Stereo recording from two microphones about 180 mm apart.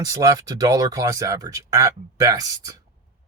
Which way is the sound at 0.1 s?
20° right (ahead or behind).